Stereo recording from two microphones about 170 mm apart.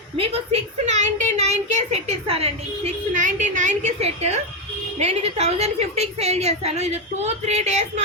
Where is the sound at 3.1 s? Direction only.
50° right (ahead or behind).